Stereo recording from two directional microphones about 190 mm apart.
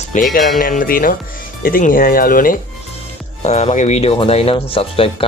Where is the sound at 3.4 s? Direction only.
35° left (ahead or behind).